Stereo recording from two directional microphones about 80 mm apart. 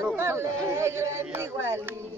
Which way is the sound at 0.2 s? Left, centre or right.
Right.